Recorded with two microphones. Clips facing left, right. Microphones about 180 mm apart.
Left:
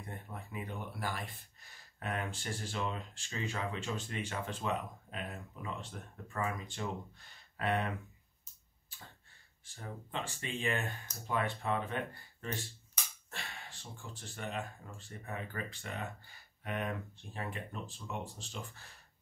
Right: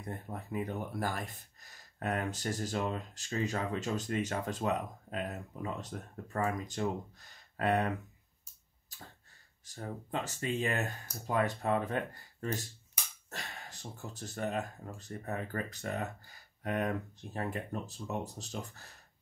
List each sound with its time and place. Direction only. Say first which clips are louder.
0.1 s speech: right 8 dB; 40° right (ahead or behind)
8.9 s arrow: right 3 dB; 40° right (ahead or behind)
9.7 s speech: right 5 dB; 40° right (ahead or behind)